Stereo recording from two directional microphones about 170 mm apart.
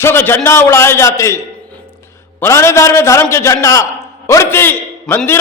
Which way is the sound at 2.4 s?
15° left (ahead or behind).